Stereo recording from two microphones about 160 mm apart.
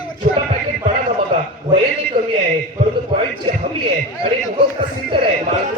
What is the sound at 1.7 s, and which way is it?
Speech, 30° right (ahead or behind).